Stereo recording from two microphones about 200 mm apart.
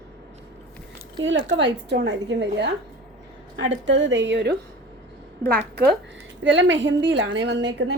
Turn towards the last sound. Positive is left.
turn(degrees=-65)  # may be behind; listen again after turning